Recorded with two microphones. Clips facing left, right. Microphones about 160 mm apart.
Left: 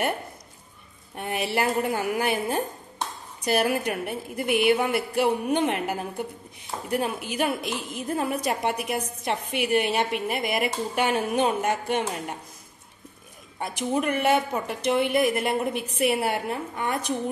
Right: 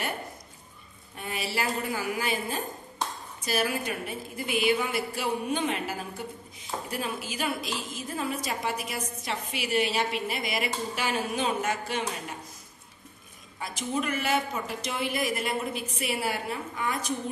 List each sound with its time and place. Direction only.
1.1 s a woman's voice: 60° left (ahead or behind)
13.7 s a woman's voice: 55° left (ahead or behind)